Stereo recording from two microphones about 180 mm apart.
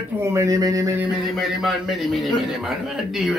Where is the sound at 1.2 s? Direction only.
Centre (ahead or behind).